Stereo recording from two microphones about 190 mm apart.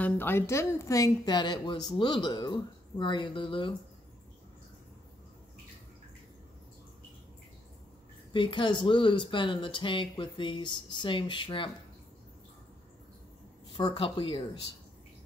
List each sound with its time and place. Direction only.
0.0 s a woman's voice: 10° left (ahead or behind); by 3.7 s 25° left (ahead or behind)
8.3 s speech: 25° left (ahead or behind)
13.7 s speech: 25° left (ahead or behind)